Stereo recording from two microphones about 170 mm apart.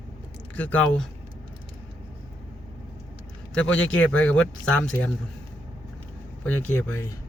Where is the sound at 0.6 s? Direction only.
10° left (ahead or behind).